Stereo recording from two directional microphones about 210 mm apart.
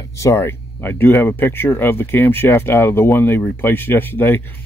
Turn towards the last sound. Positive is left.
turn(degrees=10)  # may be behind; listen again after turning